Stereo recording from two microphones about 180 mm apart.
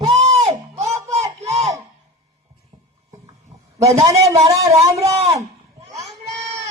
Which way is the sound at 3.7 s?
15° right (ahead or behind).